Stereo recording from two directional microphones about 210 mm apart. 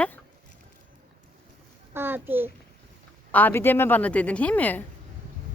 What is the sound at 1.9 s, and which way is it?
Speech, 10° right (ahead or behind).